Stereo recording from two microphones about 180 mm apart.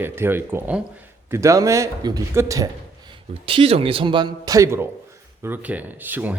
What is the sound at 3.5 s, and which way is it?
A man's voice, 30° right (ahead or behind).